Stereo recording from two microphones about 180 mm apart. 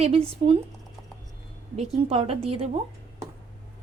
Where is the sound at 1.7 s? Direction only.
35° right (ahead or behind).